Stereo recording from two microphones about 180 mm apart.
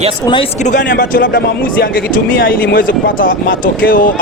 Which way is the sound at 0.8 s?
75° left (ahead or behind).